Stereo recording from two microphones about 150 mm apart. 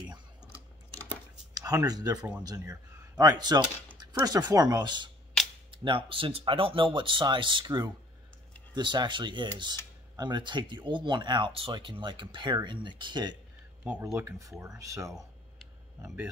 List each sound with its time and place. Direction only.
1.5 s speech: 25° right (ahead or behind)
13.8 s speech: 10° right (ahead or behind)
14.1 s speech: 20° right (ahead or behind)